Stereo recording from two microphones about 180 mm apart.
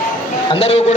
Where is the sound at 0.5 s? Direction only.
35° left (ahead or behind).